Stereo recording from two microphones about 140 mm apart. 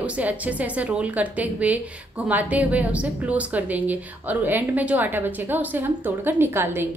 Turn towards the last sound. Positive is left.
turn(degrees=-15)  # may be behind; listen again after turning